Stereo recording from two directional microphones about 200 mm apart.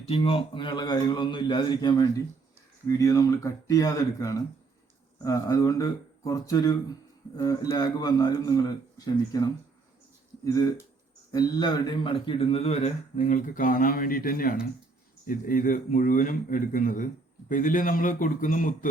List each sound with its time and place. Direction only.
0.0 s a man's voice: 30° left (ahead or behind)